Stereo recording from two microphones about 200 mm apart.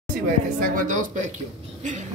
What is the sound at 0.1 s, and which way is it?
Speech, 45° right (ahead or behind).